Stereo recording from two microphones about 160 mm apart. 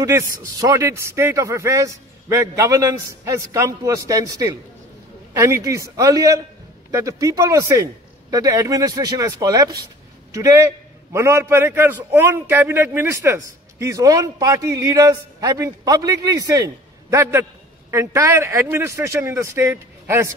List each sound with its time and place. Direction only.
0.0 s a man's voice: 20° right (ahead or behind)